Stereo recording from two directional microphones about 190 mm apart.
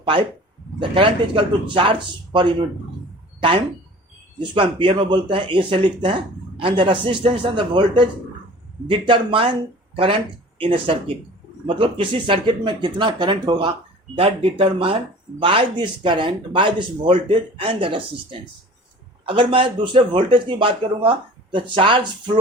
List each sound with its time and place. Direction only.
0.0 s speech: 25° right (ahead or behind)
4.4 s speech: 25° right (ahead or behind)